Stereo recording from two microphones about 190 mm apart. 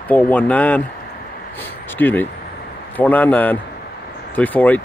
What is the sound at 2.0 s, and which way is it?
Speech, 10° left (ahead or behind).